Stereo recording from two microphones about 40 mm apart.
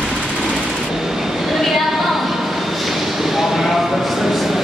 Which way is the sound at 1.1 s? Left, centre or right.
Centre.